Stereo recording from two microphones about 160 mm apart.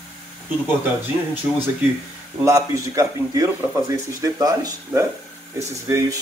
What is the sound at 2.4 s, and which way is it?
Speech, 20° right (ahead or behind).